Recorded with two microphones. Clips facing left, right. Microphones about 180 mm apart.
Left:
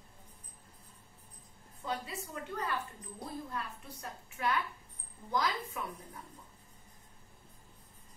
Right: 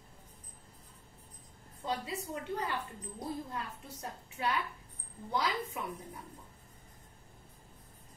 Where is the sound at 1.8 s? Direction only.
25° right (ahead or behind).